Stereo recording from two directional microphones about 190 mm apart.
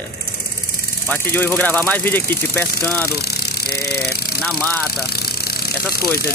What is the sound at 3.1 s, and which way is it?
Speech, 55° left (ahead or behind).